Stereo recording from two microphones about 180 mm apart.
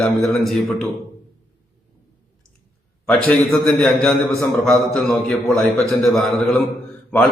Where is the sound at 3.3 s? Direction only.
5° left (ahead or behind).